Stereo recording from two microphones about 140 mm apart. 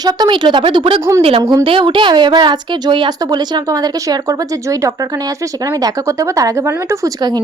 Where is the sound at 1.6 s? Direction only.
40° right (ahead or behind).